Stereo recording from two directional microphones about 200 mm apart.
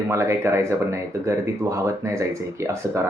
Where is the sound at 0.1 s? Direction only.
15° right (ahead or behind).